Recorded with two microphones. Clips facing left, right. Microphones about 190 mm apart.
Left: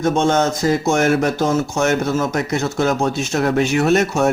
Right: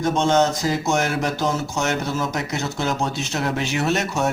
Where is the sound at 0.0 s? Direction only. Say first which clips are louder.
Left 2 dB; 50° left (ahead or behind).